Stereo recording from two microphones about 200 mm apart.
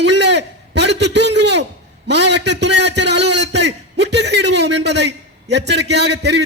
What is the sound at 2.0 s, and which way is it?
A man's voice, 60° right (ahead or behind).